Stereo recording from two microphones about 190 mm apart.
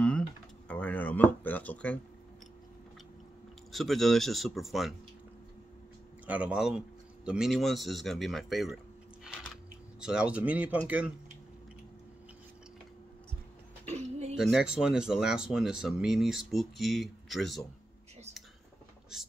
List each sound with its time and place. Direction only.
0.7 s a sound: 5° left (ahead or behind)
3.7 s speech: centre (ahead or behind)
6.2 s speech: 5° right (ahead or behind)
9.9 s speech: 5° right (ahead or behind)
13.8 s a sound: 35° right (ahead or behind)
14.3 s speech: centre (ahead or behind)